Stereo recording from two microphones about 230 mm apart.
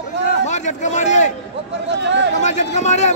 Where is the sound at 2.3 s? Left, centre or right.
Left.